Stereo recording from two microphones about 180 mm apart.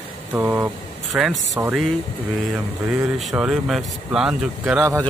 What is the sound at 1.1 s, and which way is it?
Speech, centre (ahead or behind).